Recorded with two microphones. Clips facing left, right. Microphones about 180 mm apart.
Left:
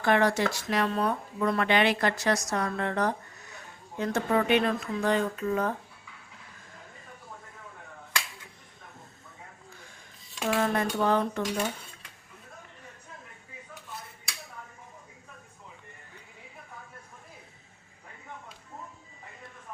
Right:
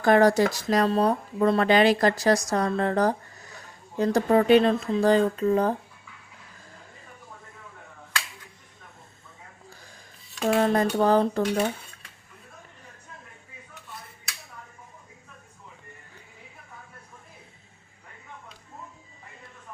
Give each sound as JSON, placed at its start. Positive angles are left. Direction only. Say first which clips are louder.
{"t": 0.0, "sound": "speech", "louder": "right 6 dB", "side_deg": -40}
{"t": 10.5, "sound": "speech", "louder": "right 5 dB", "side_deg": -35}